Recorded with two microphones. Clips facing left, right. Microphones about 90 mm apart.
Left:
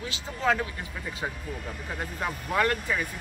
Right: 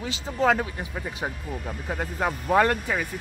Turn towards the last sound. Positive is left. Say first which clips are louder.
# right 4 dB
turn(degrees=-25)  # may be behind; listen again after turning